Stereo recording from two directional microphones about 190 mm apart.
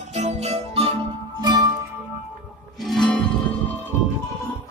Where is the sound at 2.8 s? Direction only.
Centre (ahead or behind).